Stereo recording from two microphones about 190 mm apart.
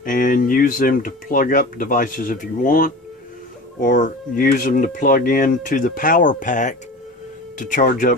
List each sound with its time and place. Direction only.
0.0 s speech: 45° left (ahead or behind)